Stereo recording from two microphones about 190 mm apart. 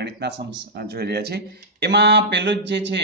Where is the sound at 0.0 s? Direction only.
60° right (ahead or behind).